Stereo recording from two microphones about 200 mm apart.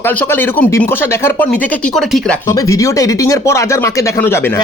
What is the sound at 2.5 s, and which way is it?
Speech, 15° left (ahead or behind).